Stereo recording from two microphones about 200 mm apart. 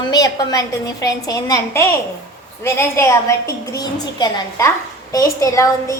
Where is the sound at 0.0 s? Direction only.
20° left (ahead or behind).